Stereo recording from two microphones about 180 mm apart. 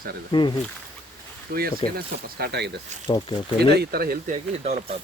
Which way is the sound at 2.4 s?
70° right (ahead or behind).